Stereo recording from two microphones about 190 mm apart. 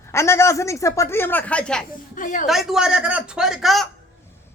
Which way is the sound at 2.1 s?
45° left (ahead or behind).